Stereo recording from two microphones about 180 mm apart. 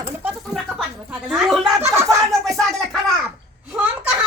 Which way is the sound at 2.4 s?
Centre (ahead or behind).